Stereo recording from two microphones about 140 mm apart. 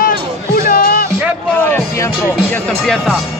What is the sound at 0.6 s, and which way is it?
Music, 90° left.